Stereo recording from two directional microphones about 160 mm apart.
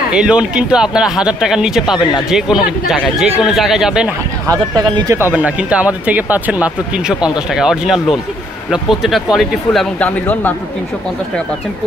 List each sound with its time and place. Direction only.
0.1 s speech: 5° right (ahead or behind)
4.5 s speech: 25° right (ahead or behind); by 10.5 s 10° left (ahead or behind)